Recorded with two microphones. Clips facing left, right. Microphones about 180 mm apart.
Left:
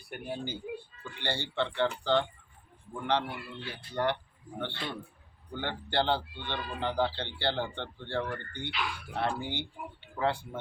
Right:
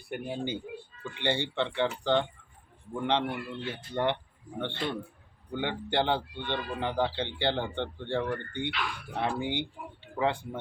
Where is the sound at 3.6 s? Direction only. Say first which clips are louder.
Right 1 dB; 20° right (ahead or behind).